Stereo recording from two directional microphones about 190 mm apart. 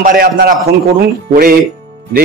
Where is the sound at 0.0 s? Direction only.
50° right (ahead or behind).